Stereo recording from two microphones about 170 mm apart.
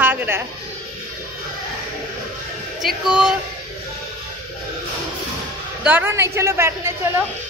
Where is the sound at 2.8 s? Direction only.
5° right (ahead or behind).